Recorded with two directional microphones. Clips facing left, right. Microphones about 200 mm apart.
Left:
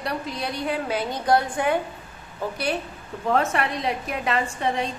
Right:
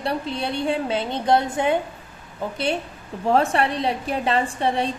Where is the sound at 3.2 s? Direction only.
30° right (ahead or behind).